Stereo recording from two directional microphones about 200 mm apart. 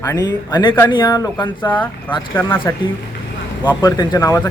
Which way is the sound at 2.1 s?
10° left (ahead or behind).